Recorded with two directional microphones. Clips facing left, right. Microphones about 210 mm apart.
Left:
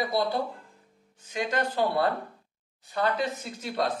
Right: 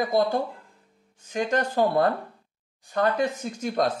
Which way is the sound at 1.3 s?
45° right (ahead or behind).